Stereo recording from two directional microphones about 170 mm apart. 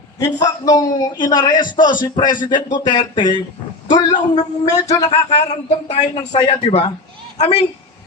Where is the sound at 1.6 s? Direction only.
50° left (ahead or behind).